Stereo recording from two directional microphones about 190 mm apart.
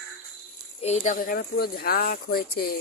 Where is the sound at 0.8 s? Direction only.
40° left (ahead or behind).